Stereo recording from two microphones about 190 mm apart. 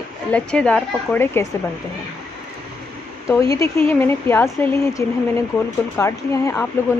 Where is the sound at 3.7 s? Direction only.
10° left (ahead or behind).